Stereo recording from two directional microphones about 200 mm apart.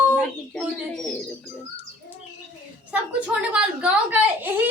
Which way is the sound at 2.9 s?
5° right (ahead or behind).